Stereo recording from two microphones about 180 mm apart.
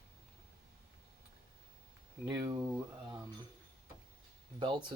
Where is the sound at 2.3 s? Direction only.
25° right (ahead or behind).